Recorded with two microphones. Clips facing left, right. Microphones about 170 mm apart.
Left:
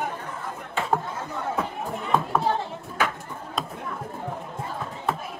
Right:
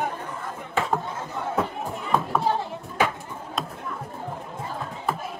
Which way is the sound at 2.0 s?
Centre (ahead or behind).